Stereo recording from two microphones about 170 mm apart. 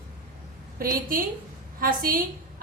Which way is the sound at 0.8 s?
55° right (ahead or behind).